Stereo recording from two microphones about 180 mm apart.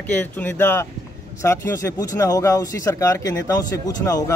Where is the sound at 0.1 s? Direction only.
10° left (ahead or behind).